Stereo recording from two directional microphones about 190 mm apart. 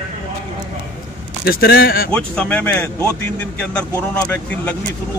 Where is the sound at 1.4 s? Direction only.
55° left (ahead or behind).